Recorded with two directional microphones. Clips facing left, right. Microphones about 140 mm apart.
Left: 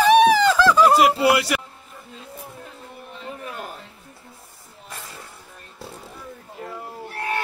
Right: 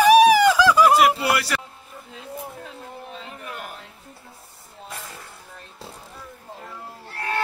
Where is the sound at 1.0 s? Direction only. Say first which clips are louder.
Left 2 dB; 20° left (ahead or behind).